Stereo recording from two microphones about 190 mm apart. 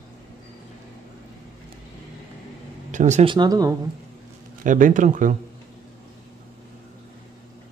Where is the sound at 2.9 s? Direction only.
40° right (ahead or behind).